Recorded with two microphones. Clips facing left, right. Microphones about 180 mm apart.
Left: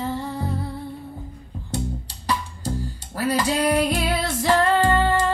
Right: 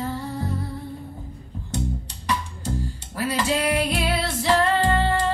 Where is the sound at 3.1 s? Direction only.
40° left (ahead or behind).